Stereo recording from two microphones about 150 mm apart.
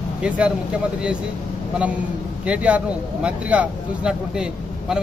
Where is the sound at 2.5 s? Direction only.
10° right (ahead or behind).